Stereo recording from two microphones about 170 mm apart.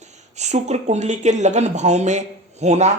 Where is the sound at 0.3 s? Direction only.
40° right (ahead or behind).